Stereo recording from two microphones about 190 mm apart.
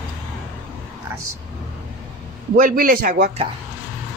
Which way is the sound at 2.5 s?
50° right (ahead or behind).